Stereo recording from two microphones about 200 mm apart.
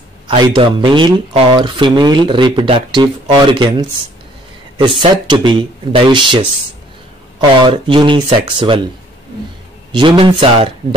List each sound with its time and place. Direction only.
0.3 s speech: 25° right (ahead or behind)
5.1 s speech: 25° right (ahead or behind)
9.9 s speech: 25° right (ahead or behind)